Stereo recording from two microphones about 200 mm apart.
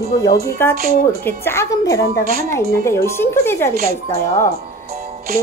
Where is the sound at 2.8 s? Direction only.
15° left (ahead or behind).